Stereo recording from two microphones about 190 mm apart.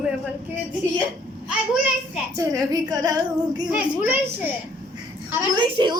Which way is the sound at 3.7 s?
10° right (ahead or behind).